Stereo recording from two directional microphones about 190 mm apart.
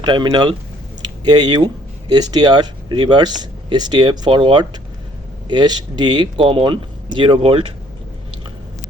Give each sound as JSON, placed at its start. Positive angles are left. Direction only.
{"t": 0.0, "sound": "speech", "side_deg": -20}